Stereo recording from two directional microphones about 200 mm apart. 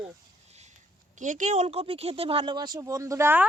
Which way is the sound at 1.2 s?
40° right (ahead or behind).